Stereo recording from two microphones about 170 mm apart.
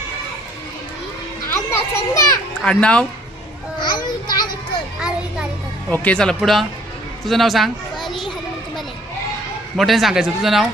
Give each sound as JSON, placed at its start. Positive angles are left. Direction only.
{"t": 1.5, "sound": "children playing", "side_deg": 15}
{"t": 2.6, "sound": "speech", "side_deg": 5}
{"t": 3.8, "sound": "children playing", "side_deg": 25}
{"t": 4.9, "sound": "music", "side_deg": -5}
{"t": 5.9, "sound": "a child's voice", "side_deg": 10}
{"t": 9.7, "sound": "speech", "side_deg": 0}